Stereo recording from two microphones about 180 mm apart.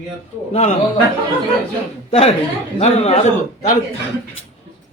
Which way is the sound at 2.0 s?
30° left (ahead or behind).